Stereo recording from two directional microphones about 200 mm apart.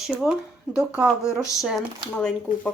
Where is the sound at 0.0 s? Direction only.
5° right (ahead or behind).